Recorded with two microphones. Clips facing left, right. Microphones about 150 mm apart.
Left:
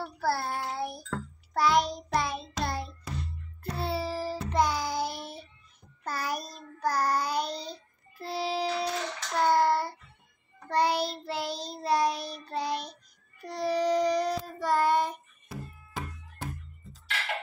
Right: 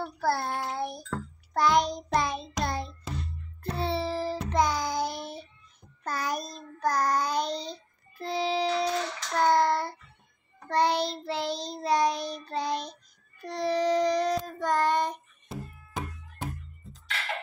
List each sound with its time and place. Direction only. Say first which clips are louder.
0.0 s child singing: right 2 dB; 5° left (ahead or behind)
2.1 s music: right 2 dB; 5° left (ahead or behind)
3.7 s child singing: right 2 dB; 5° left (ahead or behind)
15.4 s music: right 2 dB; 20° right (ahead or behind)